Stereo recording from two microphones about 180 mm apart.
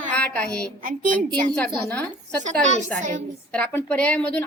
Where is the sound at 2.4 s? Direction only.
40° right (ahead or behind).